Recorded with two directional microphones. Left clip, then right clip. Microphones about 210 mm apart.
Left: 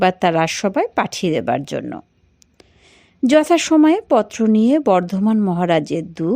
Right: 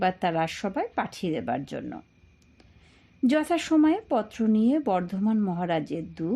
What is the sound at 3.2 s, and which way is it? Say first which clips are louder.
Speech: left 11 dB; 30° left (ahead or behind).